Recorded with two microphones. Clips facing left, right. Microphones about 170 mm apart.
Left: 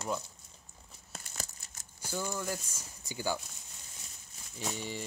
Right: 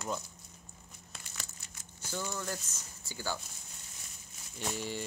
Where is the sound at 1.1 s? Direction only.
40° left (ahead or behind).